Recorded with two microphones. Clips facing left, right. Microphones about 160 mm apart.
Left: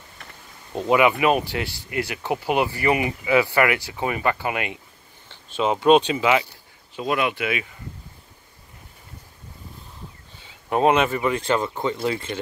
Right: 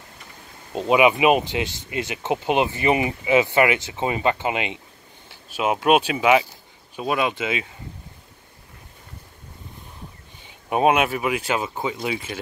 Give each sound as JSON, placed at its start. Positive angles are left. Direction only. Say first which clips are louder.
{"t": 0.7, "sound": "speech", "louder": "right 1 dB", "side_deg": -20}
{"t": 5.3, "sound": "speech", "louder": "left 1 dB", "side_deg": -10}
{"t": 10.4, "sound": "speech", "louder": "even", "side_deg": -15}